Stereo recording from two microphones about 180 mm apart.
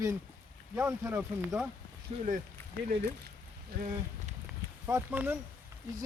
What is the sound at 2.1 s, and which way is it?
Speech, 25° right (ahead or behind).